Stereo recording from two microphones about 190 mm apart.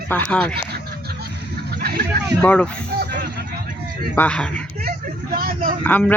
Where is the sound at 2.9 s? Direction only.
60° right (ahead or behind).